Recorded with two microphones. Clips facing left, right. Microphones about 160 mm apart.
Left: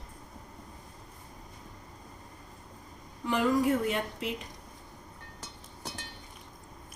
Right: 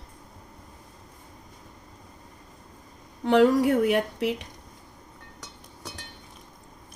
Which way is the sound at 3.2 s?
70° right (ahead or behind).